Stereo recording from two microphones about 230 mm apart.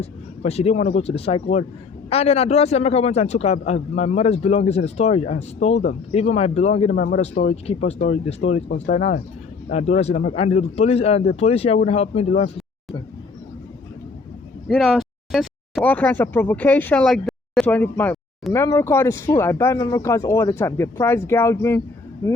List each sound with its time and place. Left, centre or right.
0.0 s a man's voice: left
14.7 s speech: centre